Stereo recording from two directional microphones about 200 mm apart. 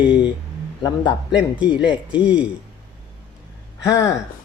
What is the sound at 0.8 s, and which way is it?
Speech, 20° left (ahead or behind).